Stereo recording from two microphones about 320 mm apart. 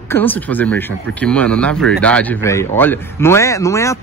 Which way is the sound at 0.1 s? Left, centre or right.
Centre.